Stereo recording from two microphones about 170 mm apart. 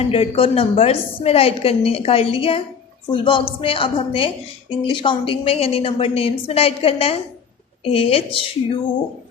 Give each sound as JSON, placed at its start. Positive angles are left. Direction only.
{"t": 0.0, "sound": "a woman's voice", "side_deg": 35}